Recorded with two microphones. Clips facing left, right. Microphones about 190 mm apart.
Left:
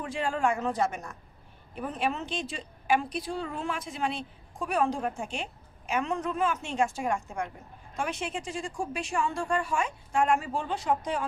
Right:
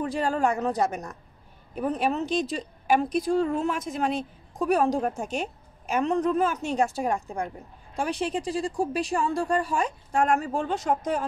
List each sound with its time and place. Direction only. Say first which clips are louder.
0.0 s speech: right 4 dB; 40° right (ahead or behind)